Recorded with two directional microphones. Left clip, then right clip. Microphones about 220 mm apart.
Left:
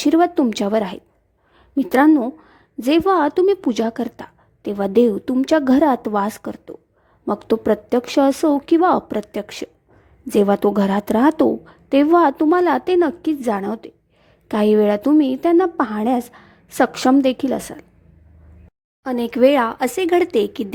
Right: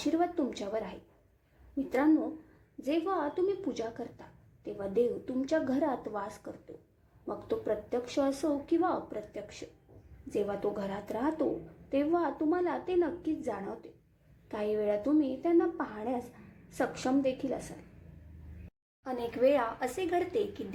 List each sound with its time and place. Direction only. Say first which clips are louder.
0.0 s a woman's voice: left 15 dB; 50° left (ahead or behind)
19.0 s a woman's voice: left 13 dB; 45° left (ahead or behind)